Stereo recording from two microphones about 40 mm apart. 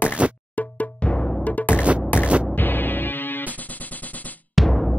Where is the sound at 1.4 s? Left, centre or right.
Left.